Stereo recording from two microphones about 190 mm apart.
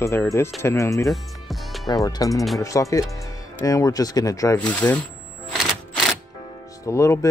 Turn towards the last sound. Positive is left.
turn(degrees=15)  # may be behind; listen again after turning